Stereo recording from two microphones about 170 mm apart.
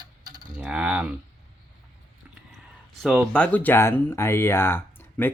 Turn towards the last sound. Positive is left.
turn(degrees=15)  # may be behind; listen again after turning